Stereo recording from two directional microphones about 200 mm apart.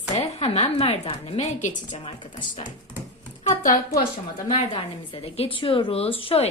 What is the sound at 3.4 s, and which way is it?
Speech, 40° left (ahead or behind).